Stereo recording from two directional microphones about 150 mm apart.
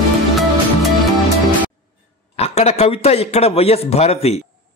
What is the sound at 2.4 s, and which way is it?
A man's voice, 45° left (ahead or behind).